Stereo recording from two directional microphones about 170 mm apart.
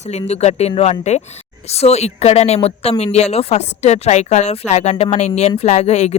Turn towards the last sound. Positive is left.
turn(degrees=40)  # may be behind; listen again after turning